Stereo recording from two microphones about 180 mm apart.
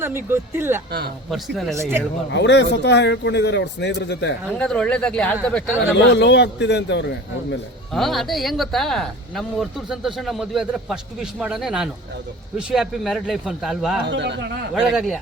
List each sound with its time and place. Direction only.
0.0 s speech: 15° right (ahead or behind)
2.3 s speech: 70° left (ahead or behind)
4.5 s speech: 5° left (ahead or behind)
5.9 s speech: 70° left (ahead or behind)
7.9 s speech: centre (ahead or behind)
14.1 s speech: 75° right (ahead or behind)
14.8 s speech: centre (ahead or behind)